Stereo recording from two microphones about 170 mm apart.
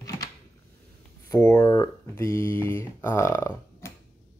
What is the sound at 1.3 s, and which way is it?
Speech, 15° left (ahead or behind).